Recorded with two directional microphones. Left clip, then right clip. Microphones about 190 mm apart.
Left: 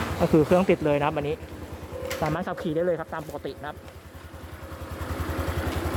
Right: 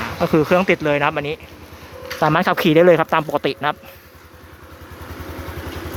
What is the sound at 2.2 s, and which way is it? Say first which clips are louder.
Speech: right 15 dB; 15° right (ahead or behind).